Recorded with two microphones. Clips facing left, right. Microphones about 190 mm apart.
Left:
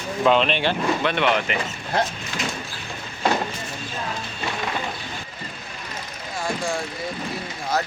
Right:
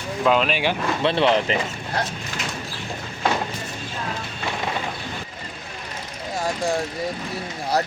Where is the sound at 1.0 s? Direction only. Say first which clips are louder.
Right 6 dB; 30° right (ahead or behind).